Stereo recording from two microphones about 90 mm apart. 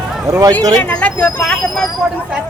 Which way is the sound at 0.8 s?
15° left (ahead or behind).